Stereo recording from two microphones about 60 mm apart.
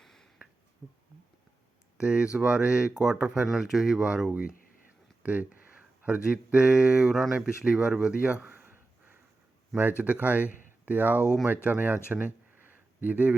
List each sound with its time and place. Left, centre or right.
0.0 s finger snapping: centre
2.0 s speech: centre
5.2 s speech: right
10.0 s speech: right
13.0 s speech: right